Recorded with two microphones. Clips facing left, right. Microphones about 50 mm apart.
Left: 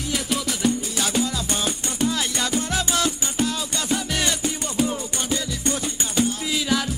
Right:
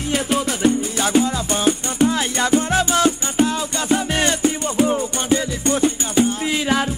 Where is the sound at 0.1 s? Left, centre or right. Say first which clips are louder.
Right 6 dB; right.